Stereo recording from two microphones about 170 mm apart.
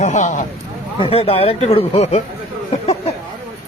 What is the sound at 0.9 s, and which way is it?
Speech, 35° left (ahead or behind).